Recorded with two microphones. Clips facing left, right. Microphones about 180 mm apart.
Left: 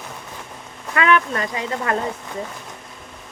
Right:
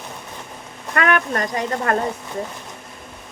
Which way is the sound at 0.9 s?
50° right (ahead or behind).